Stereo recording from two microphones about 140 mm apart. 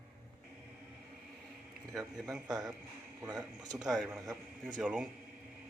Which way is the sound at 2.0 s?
Centre (ahead or behind).